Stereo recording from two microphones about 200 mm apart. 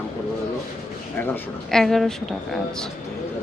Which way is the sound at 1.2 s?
10° left (ahead or behind).